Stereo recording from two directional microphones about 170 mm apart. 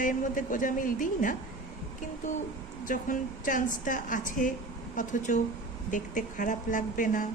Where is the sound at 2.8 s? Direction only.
50° left (ahead or behind).